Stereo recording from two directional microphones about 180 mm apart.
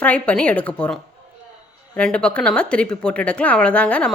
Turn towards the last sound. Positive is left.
turn(degrees=5)  # may be behind; listen again after turning